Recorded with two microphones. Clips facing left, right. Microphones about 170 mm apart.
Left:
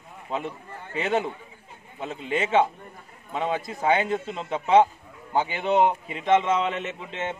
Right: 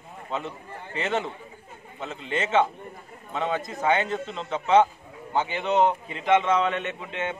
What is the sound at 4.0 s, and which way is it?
A man's voice, 5° left (ahead or behind).